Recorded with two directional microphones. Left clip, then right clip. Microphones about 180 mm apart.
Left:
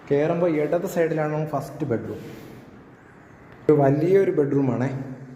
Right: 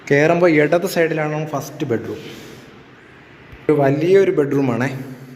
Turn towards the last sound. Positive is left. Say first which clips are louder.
# right 5 dB
turn(degrees=0)  # may be behind; listen again after turning